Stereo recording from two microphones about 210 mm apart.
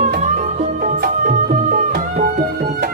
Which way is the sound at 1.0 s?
40° right (ahead or behind).